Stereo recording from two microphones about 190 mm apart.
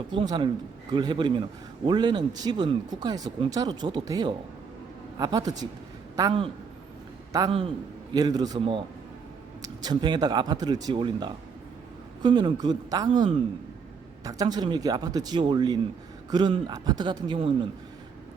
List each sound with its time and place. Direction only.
0.2 s a man's voice: 25° right (ahead or behind)
8.1 s a man's voice: 20° right (ahead or behind)
9.8 s a man's voice: 20° right (ahead or behind)